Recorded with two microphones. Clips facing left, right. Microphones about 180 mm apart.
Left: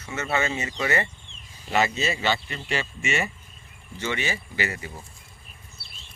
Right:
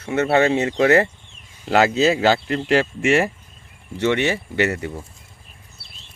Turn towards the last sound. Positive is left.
turn(degrees=-65)  # may be behind; listen again after turning